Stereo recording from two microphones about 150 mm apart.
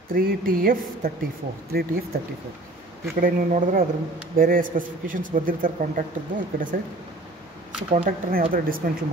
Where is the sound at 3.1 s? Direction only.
65° right (ahead or behind).